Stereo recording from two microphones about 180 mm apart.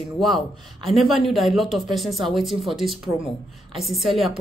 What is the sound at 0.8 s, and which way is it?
Speech, centre (ahead or behind).